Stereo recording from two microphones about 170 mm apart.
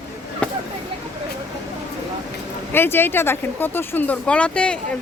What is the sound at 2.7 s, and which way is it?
Speech, 15° left (ahead or behind).